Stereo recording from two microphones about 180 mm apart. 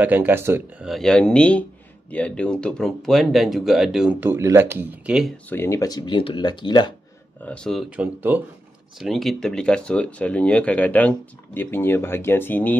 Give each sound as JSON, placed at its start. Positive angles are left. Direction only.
{"t": 0.0, "sound": "speech", "side_deg": -10}
{"t": 0.8, "sound": "speech", "side_deg": 0}
{"t": 5.5, "sound": "speech", "side_deg": 15}
{"t": 7.4, "sound": "speech", "side_deg": 5}
{"t": 7.9, "sound": "speech", "side_deg": -10}